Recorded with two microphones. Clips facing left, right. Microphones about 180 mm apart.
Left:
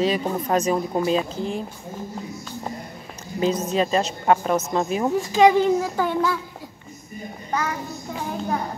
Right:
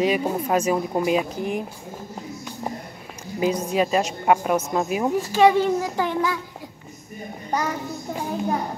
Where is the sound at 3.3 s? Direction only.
10° right (ahead or behind).